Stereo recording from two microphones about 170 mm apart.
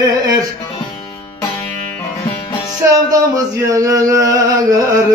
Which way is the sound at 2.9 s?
20° right (ahead or behind).